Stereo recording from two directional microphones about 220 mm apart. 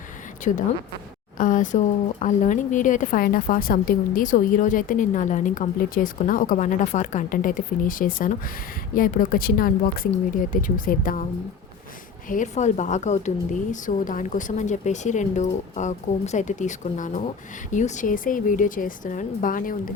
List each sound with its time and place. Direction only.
0.5 s a woman's voice: 30° left (ahead or behind)
12.3 s a woman's voice: 35° left (ahead or behind)